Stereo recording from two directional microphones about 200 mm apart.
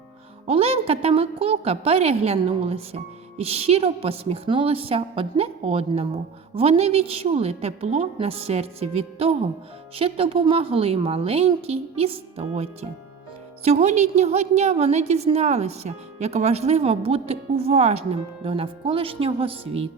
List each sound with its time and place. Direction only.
0.4 s a woman's voice: 30° right (ahead or behind)